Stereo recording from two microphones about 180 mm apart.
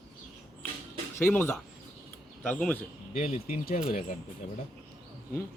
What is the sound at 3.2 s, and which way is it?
Speech, 35° left (ahead or behind).